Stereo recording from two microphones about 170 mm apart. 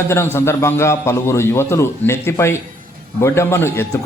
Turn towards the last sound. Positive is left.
turn(degrees=15)  # may be behind; listen again after turning